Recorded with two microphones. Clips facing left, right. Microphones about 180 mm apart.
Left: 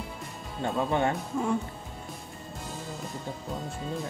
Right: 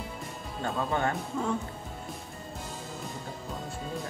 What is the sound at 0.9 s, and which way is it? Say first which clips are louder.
Speech: left 2 dB; 20° left (ahead or behind).